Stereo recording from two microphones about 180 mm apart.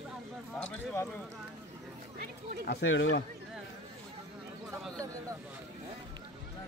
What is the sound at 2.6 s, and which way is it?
Speech, 90° left.